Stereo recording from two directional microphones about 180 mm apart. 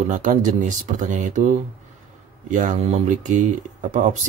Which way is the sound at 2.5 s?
45° right (ahead or behind).